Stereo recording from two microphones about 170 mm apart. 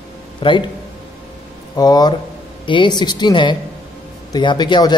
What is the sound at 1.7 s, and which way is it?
A man's voice, 25° left (ahead or behind).